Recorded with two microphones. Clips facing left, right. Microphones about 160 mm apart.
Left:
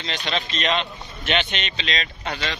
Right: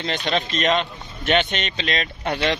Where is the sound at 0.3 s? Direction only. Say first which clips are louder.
Right 3 dB; 45° right (ahead or behind).